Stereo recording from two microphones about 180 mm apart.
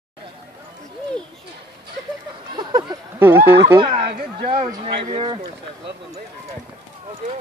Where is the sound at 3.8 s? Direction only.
30° right (ahead or behind).